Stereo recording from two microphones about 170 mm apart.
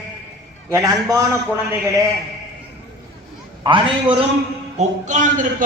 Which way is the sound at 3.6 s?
30° right (ahead or behind).